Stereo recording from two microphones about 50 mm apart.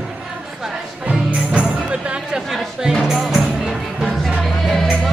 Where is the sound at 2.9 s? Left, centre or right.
Centre.